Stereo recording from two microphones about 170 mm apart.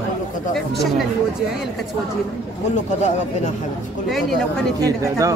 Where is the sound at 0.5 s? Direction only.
Centre (ahead or behind).